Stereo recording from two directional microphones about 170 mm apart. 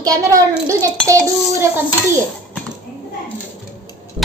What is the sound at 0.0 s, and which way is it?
A child's voice, 20° right (ahead or behind).